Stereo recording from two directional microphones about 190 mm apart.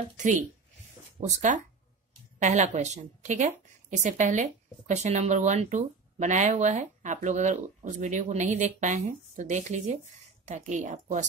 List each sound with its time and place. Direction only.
1.2 s a woman's voice: 40° right (ahead or behind)